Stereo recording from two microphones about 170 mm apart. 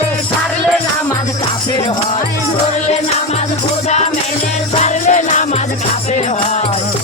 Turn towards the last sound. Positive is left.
turn(degrees=45)  # may be behind; listen again after turning